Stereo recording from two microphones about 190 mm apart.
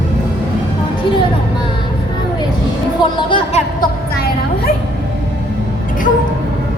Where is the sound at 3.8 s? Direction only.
50° left (ahead or behind).